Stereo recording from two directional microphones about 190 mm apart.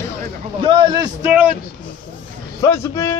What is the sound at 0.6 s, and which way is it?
Speech, 25° right (ahead or behind).